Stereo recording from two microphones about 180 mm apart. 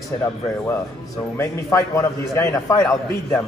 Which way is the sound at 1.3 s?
15° left (ahead or behind).